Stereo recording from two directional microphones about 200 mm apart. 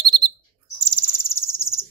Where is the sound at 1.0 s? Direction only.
15° left (ahead or behind).